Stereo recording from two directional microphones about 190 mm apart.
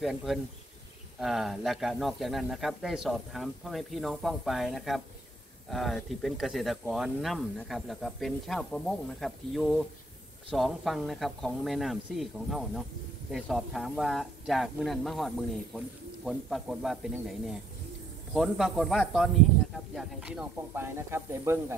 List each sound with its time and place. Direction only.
0.0 s speech: centre (ahead or behind)